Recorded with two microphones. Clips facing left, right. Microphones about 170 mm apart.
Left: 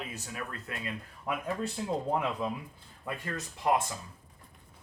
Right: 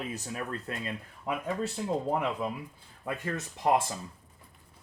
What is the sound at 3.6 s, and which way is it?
Speech, 25° right (ahead or behind).